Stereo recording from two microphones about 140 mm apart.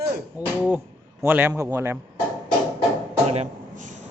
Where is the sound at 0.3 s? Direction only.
10° right (ahead or behind).